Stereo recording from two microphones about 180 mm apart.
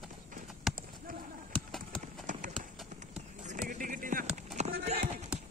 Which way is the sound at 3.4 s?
45° right (ahead or behind).